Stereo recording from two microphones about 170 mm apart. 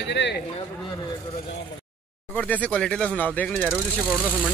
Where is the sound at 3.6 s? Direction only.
5° right (ahead or behind).